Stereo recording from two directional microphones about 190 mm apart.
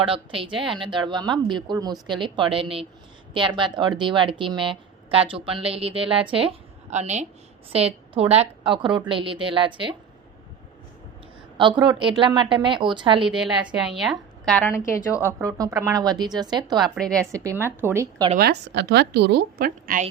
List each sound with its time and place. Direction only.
0.0 s a woman's voice: 30° right (ahead or behind)
11.5 s speech: 25° right (ahead or behind)
13.2 s a woman's voice: 5° right (ahead or behind); by 15.3 s 15° left (ahead or behind)
15.3 s speech: 15° right (ahead or behind)
16.9 s a woman's voice: 5° left (ahead or behind)
17.3 s speech: 15° right (ahead or behind)
18.3 s a woman's voice: 60° right (ahead or behind)